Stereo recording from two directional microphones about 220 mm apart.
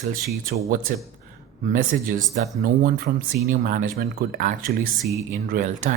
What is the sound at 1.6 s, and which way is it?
Speech, 40° right (ahead or behind).